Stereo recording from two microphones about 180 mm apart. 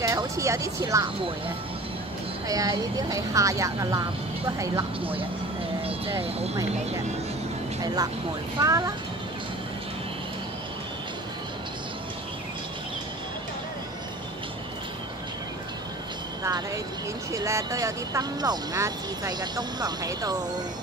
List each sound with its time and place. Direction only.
0.0 s speech: 20° right (ahead or behind)
2.4 s speech: 20° right (ahead or behind)
6.2 s speech: 35° right (ahead or behind)
7.8 s speech: 20° right (ahead or behind)
16.4 s speech: 20° right (ahead or behind)